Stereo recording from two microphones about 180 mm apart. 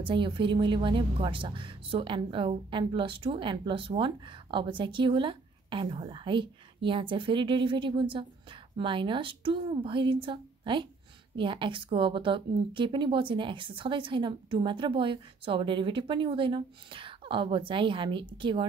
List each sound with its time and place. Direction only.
0.0 s speech: 25° right (ahead or behind)